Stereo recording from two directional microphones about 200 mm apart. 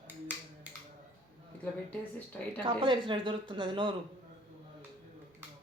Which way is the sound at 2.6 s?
25° right (ahead or behind).